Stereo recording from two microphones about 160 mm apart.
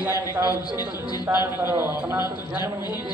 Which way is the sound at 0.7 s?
25° left (ahead or behind).